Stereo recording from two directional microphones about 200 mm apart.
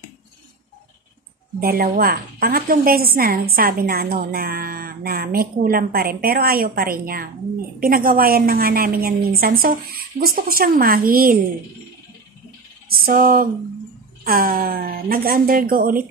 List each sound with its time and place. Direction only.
1.6 s a woman's voice: 45° right (ahead or behind)
12.9 s a woman's voice: 45° right (ahead or behind)